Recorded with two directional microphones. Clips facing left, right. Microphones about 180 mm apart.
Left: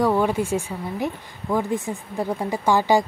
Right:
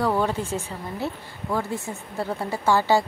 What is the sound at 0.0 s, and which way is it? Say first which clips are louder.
Speech: left 3 dB; 10° left (ahead or behind).